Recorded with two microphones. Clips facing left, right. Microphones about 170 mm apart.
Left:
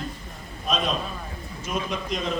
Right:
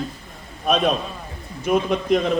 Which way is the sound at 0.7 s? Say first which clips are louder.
Right 7 dB; 60° right (ahead or behind).